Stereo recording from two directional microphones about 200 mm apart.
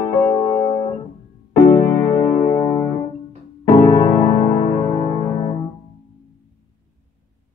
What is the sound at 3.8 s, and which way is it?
Music, 15° left (ahead or behind).